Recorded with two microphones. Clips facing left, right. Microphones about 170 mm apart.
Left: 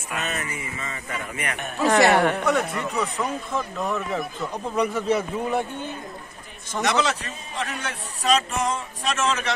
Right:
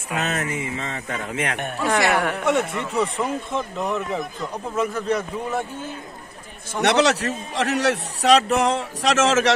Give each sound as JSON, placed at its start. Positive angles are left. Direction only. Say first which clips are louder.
{"t": 0.1, "sound": "speech", "louder": "right 5 dB", "side_deg": -80}
{"t": 2.1, "sound": "speech", "louder": "even", "side_deg": 0}
{"t": 2.9, "sound": "speech", "louder": "right 3 dB", "side_deg": -25}
{"t": 4.2, "sound": "speech", "louder": "even", "side_deg": 0}
{"t": 6.8, "sound": "a man's voice", "louder": "right 5 dB", "side_deg": -70}